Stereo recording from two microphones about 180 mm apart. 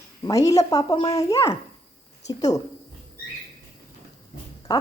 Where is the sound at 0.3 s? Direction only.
20° left (ahead or behind).